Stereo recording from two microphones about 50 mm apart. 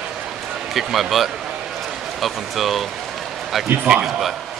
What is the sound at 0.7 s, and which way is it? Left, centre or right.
Speech, centre.